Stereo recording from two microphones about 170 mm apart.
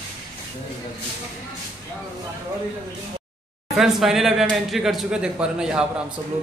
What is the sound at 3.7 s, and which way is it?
Speech, centre (ahead or behind).